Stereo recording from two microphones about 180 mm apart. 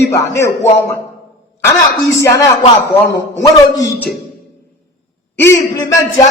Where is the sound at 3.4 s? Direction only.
20° left (ahead or behind).